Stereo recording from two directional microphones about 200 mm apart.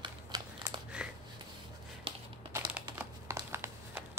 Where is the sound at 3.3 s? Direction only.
15° right (ahead or behind).